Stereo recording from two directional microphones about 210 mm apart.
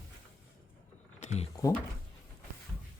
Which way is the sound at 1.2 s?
35° left (ahead or behind).